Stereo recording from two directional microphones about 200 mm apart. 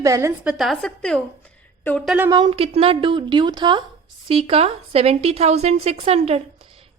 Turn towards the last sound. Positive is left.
turn(degrees=-30)  # may be behind; listen again after turning